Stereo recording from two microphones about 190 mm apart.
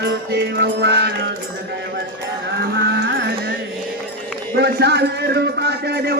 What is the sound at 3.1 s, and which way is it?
Carnatic music, 55° right (ahead or behind).